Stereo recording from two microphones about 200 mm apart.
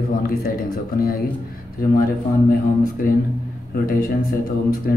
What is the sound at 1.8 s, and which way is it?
Speech, 45° left (ahead or behind).